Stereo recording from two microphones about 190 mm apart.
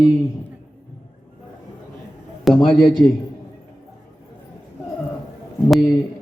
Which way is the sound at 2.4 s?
Centre (ahead or behind).